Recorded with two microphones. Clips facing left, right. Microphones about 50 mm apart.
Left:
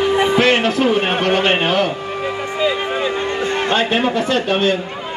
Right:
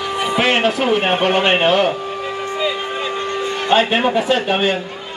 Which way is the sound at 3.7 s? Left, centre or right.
Centre.